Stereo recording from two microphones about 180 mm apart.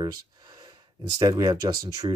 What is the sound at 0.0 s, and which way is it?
Speech, 25° right (ahead or behind).